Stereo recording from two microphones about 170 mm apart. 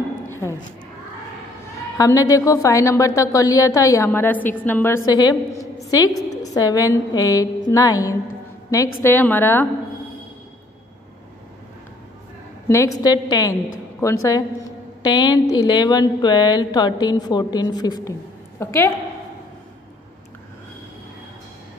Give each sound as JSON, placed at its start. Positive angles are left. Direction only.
{"t": 0.3, "sound": "a sound", "side_deg": 15}
{"t": 2.0, "sound": "a woman's voice", "side_deg": 20}
{"t": 12.6, "sound": "a woman's voice", "side_deg": 20}